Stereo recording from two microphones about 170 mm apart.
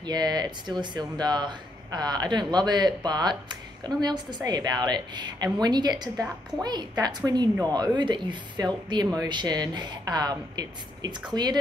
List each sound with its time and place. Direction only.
0.0 s speech: 25° right (ahead or behind)